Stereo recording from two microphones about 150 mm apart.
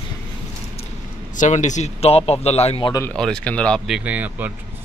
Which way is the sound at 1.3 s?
55° left (ahead or behind).